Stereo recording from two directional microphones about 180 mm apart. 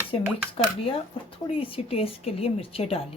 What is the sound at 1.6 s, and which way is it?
Speech, 30° left (ahead or behind).